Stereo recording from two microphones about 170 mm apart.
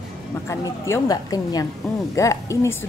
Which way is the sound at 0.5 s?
15° left (ahead or behind).